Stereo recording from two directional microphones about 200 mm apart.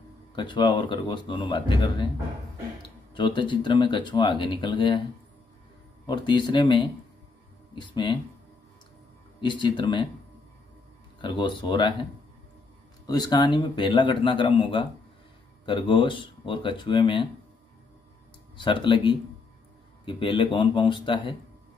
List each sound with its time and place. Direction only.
0.4 s a man's voice: 25° left (ahead or behind)
3.2 s a man's voice: 25° left (ahead or behind)
6.0 s a man's voice: 20° left (ahead or behind)
9.4 s a man's voice: 25° left (ahead or behind)
11.1 s a man's voice: 25° left (ahead or behind)
18.6 s a man's voice: 25° left (ahead or behind)